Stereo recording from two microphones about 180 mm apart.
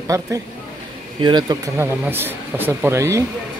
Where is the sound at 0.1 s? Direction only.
15° right (ahead or behind).